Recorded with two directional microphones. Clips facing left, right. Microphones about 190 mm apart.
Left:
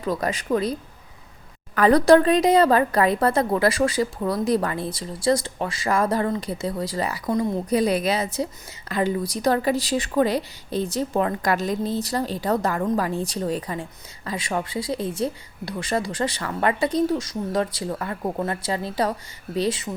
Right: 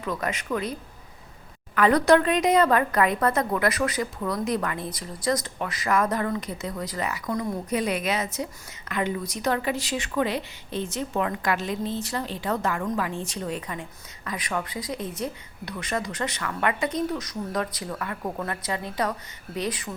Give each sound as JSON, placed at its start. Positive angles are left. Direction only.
{"t": 0.0, "sound": "a woman's voice", "side_deg": 35}